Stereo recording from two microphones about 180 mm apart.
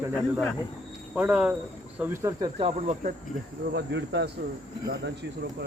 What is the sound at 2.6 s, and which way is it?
Speech, 40° right (ahead or behind).